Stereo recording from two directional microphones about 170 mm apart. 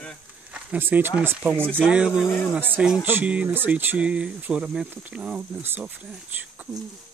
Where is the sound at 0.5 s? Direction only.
10° right (ahead or behind).